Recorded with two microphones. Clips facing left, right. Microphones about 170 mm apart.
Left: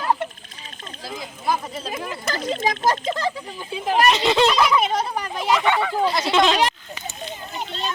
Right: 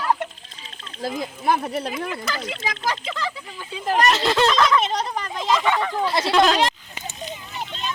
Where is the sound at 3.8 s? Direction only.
Centre (ahead or behind).